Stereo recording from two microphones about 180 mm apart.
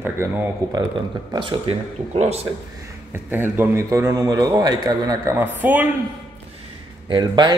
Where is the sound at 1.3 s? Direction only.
30° right (ahead or behind).